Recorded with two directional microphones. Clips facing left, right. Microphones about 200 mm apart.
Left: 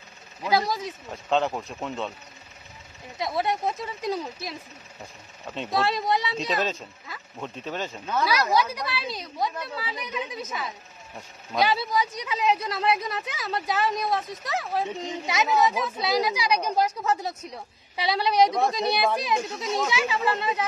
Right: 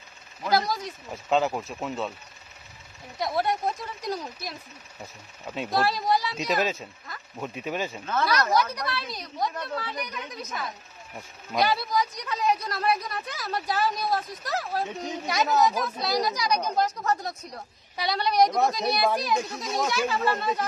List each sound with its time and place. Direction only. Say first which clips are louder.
0.4 s speech: left 1 dB; centre (ahead or behind)
3.2 s speech: even; centre (ahead or behind)
8.1 s speech: left 1 dB; 10° left (ahead or behind)